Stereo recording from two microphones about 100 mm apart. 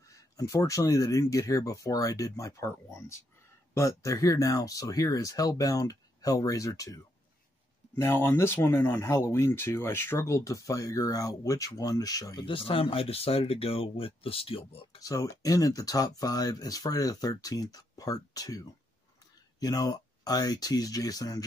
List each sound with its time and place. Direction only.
0.0 s speech: 35° left (ahead or behind)
7.9 s speech: 20° left (ahead or behind)
12.4 s speech: 60° left (ahead or behind)
15.0 s speech: 35° left (ahead or behind)